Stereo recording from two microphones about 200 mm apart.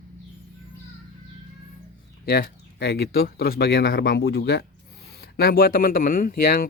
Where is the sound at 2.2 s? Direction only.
50° left (ahead or behind).